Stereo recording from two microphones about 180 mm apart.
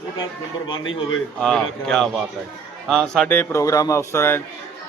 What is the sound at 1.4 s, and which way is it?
A man's voice, 5° left (ahead or behind).